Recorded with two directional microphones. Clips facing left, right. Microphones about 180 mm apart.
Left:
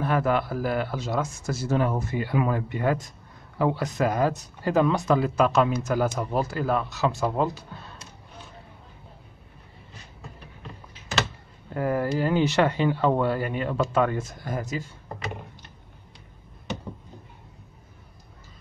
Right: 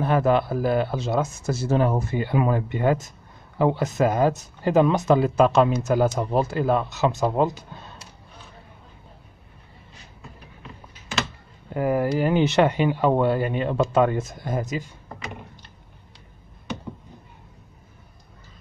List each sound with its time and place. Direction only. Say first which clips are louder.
0.0 s speech: right 4 dB; 25° right (ahead or behind)
11.7 s speech: right 3 dB; 15° right (ahead or behind)